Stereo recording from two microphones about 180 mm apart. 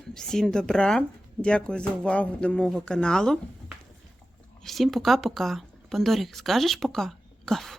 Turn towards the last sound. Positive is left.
turn(degrees=0)  # may be behind; listen again after turning